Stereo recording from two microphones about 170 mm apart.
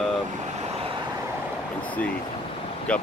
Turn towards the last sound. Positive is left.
turn(degrees=5)  # may be behind; listen again after turning